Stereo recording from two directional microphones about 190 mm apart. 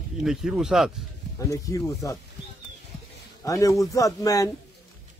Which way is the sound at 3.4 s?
15° left (ahead or behind).